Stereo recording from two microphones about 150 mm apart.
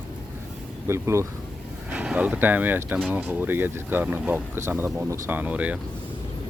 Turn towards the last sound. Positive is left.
turn(degrees=-10)  # may be behind; listen again after turning